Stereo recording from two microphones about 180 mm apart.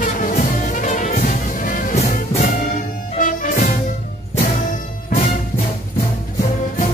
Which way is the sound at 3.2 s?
50° left (ahead or behind).